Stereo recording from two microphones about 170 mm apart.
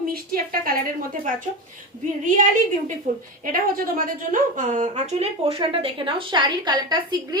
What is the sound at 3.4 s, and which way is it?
A woman's voice, 55° right (ahead or behind).